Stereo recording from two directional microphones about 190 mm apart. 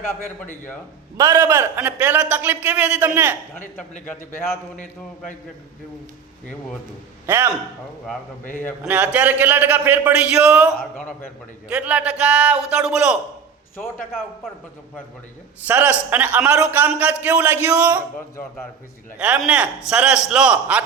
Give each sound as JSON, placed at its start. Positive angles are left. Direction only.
{"t": 0.3, "sound": "a man's voice", "side_deg": 10}
{"t": 1.1, "sound": "a man's voice", "side_deg": -15}
{"t": 4.8, "sound": "a man's voice", "side_deg": 40}
{"t": 7.3, "sound": "a man's voice", "side_deg": -10}
{"t": 8.8, "sound": "a man's voice", "side_deg": -10}
{"t": 15.6, "sound": "a man's voice", "side_deg": -10}
{"t": 19.2, "sound": "a man's voice", "side_deg": -5}